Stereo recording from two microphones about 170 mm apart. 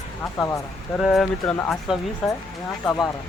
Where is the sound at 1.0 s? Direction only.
Centre (ahead or behind).